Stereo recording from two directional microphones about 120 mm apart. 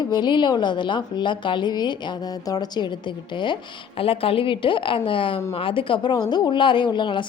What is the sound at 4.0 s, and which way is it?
A woman's voice, 50° left (ahead or behind).